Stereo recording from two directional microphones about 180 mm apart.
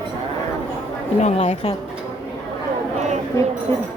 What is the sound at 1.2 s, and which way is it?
Speech, 35° left (ahead or behind).